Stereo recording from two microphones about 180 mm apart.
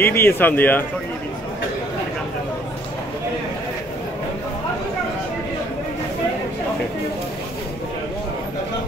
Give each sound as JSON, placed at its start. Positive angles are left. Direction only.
{"t": 0.0, "sound": "speech", "side_deg": 10}